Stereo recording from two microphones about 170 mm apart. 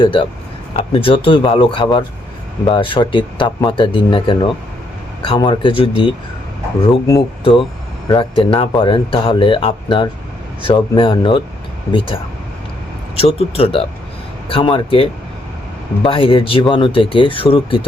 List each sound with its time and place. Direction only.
0.0 s speech: 30° left (ahead or behind)
7.2 s speech: 30° left (ahead or behind)